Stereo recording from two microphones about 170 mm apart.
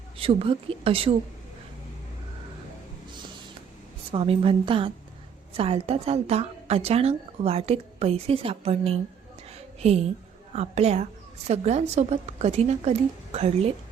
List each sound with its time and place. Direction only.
0.2 s a woman's voice: 35° right (ahead or behind)
4.1 s a woman's voice: 35° right (ahead or behind)